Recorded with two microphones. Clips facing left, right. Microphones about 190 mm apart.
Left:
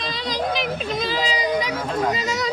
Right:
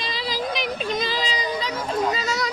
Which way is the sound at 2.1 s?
15° left (ahead or behind).